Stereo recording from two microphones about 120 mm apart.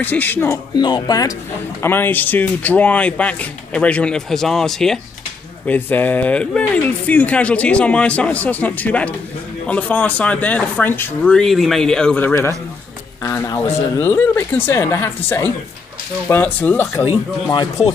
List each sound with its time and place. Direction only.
0.0 s speech: 15° left (ahead or behind)
0.7 s speech: 40° left (ahead or behind)
1.8 s speech: 15° left (ahead or behind)
5.7 s speech: 15° left (ahead or behind)
11.3 s speech: centre (ahead or behind)
13.2 s speech: 30° left (ahead or behind)
13.7 s speech: 20° left (ahead or behind)